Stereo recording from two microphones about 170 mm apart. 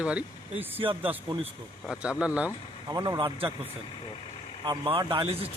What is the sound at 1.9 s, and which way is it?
Speech, 5° right (ahead or behind).